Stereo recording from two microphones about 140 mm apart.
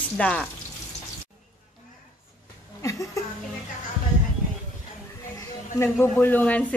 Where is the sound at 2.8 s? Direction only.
20° left (ahead or behind).